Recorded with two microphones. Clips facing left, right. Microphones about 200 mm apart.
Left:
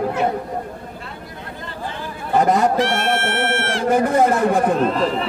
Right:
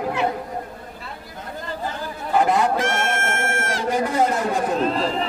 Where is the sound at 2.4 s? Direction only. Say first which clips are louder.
Left 3 dB; 45° left (ahead or behind).